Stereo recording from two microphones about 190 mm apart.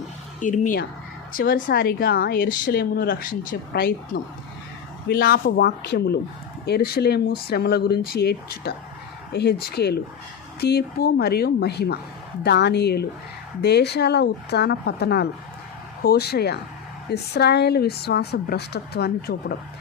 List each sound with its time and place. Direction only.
0.3 s a woman's voice: 40° left (ahead or behind)